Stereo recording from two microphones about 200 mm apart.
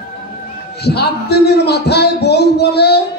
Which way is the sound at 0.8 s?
55° left (ahead or behind).